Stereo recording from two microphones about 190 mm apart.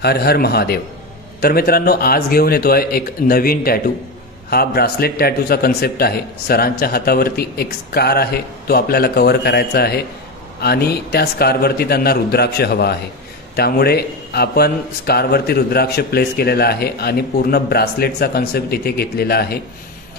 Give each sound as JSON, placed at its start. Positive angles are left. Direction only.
{"t": 0.0, "sound": "a man's voice", "side_deg": 55}